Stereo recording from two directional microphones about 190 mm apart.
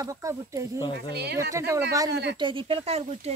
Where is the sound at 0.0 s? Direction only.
15° right (ahead or behind).